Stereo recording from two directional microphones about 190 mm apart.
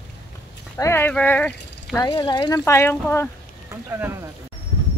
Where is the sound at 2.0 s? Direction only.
25° left (ahead or behind).